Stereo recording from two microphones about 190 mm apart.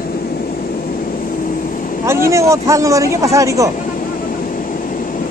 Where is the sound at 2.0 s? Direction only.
15° right (ahead or behind).